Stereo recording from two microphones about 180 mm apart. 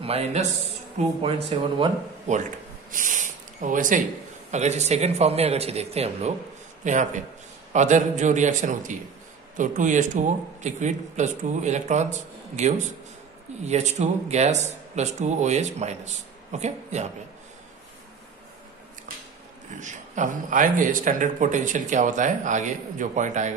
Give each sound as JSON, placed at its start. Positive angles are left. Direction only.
{"t": 0.0, "sound": "a man's voice", "side_deg": -35}
{"t": 19.7, "sound": "speech", "side_deg": -45}